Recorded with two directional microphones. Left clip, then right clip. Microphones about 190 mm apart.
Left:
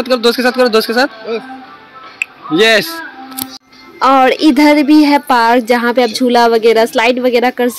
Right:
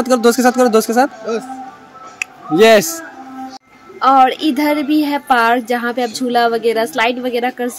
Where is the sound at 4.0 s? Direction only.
25° left (ahead or behind).